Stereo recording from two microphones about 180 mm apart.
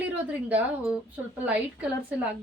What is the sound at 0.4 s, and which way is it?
Speech, 10° right (ahead or behind).